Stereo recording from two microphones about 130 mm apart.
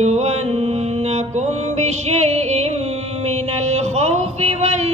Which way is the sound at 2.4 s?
60° right (ahead or behind).